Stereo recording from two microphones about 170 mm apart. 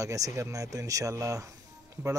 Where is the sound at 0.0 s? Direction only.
20° right (ahead or behind).